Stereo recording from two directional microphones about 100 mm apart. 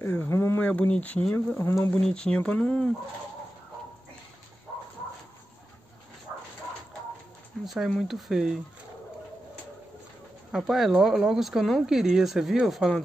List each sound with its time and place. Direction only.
0.0 s speech: 20° left (ahead or behind)
1.6 s speech: 25° left (ahead or behind)
2.0 s speech: 10° left (ahead or behind)
7.6 s speech: centre (ahead or behind)
10.5 s speech: 5° right (ahead or behind)